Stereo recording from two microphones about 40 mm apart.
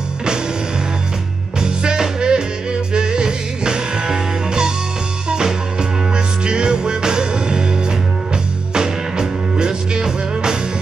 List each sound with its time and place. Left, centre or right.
1.6 s music: centre
8.7 s music: centre